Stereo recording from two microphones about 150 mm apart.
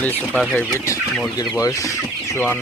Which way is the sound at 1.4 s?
25° left (ahead or behind).